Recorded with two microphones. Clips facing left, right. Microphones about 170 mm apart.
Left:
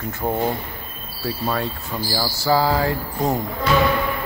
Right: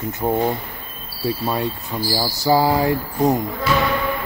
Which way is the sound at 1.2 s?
20° right (ahead or behind).